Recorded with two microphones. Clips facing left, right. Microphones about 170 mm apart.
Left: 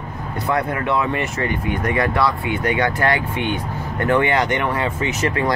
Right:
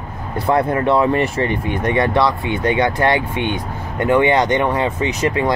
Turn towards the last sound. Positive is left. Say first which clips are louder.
# right 3 dB
turn(degrees=-20)  # may be behind; listen again after turning